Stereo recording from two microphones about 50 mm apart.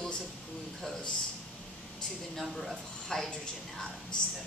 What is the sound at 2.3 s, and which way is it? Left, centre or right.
Speech, centre.